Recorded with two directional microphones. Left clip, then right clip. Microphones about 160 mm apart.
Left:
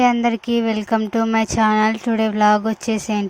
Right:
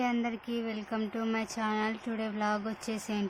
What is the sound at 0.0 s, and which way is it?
A woman's voice, 55° left (ahead or behind).